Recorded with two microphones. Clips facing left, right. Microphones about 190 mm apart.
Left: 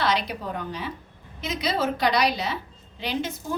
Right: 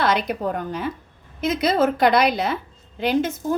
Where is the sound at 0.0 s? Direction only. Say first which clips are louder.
Right 5 dB; 50° right (ahead or behind).